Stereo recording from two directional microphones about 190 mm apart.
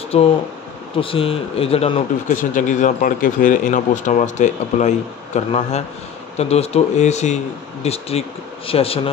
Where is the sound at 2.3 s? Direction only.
45° left (ahead or behind).